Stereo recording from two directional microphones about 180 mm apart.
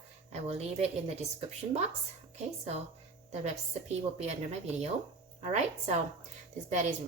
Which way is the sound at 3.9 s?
40° right (ahead or behind).